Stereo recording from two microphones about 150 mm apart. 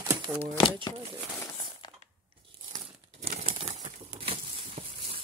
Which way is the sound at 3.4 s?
40° right (ahead or behind).